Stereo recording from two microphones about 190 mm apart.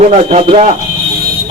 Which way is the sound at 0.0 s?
40° right (ahead or behind).